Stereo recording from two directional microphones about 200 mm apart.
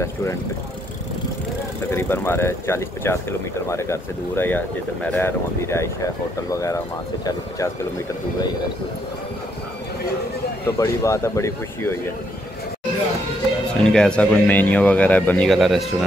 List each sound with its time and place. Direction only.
0.0 s speech: 15° left (ahead or behind)
1.9 s speech: 10° left (ahead or behind)
10.8 s speech: 15° left (ahead or behind)
13.8 s speech: 5° left (ahead or behind)